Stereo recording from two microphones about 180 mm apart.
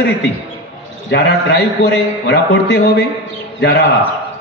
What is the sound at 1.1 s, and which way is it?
A man's voice, 65° left (ahead or behind).